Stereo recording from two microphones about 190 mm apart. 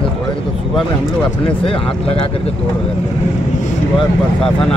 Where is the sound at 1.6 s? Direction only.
30° left (ahead or behind).